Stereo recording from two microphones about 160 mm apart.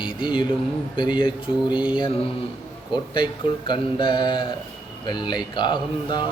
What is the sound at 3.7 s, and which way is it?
Speech, 30° left (ahead or behind).